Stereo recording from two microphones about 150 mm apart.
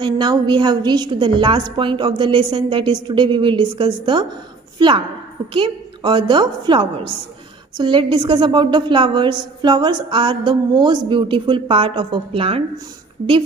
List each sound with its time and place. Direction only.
0.0 s a woman's voice: 30° right (ahead or behind)